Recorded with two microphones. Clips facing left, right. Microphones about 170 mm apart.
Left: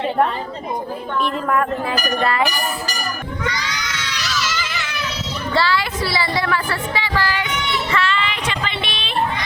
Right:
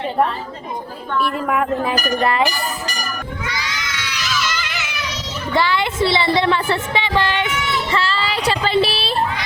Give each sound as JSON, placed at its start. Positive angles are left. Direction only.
{"t": 1.2, "sound": "speech", "side_deg": -15}
{"t": 3.4, "sound": "crowd", "side_deg": -5}
{"t": 4.4, "sound": "children playing", "side_deg": 0}
{"t": 5.5, "sound": "a woman's voice", "side_deg": -20}
{"t": 7.9, "sound": "a sound", "side_deg": -30}